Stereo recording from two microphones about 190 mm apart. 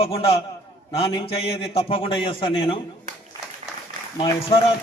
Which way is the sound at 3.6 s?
35° right (ahead or behind).